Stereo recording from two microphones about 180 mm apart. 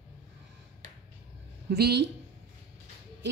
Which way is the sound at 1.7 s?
65° right (ahead or behind).